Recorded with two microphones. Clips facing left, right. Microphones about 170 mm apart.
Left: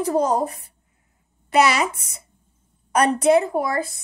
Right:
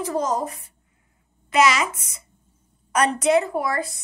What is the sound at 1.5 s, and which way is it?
Speech, 35° left (ahead or behind).